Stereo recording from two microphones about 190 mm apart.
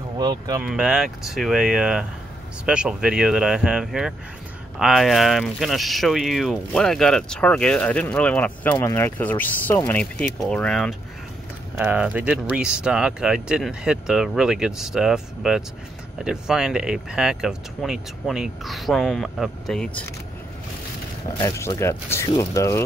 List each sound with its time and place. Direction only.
0.2 s speech: 20° right (ahead or behind)
0.6 s speech: 5° right (ahead or behind)
21.4 s speech: 15° left (ahead or behind)